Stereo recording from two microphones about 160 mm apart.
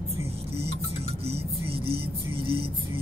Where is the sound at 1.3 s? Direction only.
35° right (ahead or behind).